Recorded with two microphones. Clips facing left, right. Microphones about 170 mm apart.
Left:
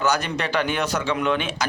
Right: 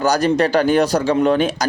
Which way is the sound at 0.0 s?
35° right (ahead or behind).